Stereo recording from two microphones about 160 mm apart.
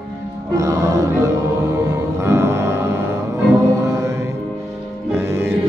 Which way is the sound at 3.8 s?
15° right (ahead or behind).